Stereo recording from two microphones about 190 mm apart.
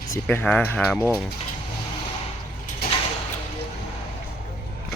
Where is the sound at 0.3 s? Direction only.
10° left (ahead or behind).